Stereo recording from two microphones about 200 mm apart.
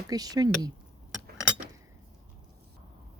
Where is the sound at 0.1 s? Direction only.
20° right (ahead or behind).